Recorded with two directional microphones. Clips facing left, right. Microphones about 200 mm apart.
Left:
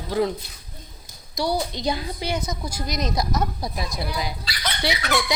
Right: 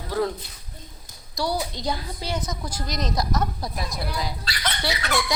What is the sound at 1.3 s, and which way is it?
A woman's voice, 20° left (ahead or behind).